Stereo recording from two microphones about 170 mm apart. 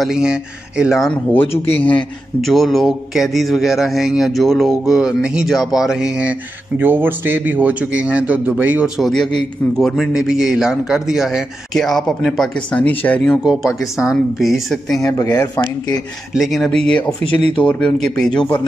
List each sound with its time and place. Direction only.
0.0 s a man's voice: 5° right (ahead or behind)
13.4 s a man's voice: 5° right (ahead or behind)
15.1 s speech: 15° left (ahead or behind)
16.3 s a man's voice: centre (ahead or behind)